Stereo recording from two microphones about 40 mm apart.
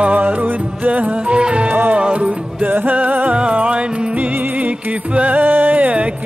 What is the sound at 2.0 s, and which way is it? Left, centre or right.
Music, right.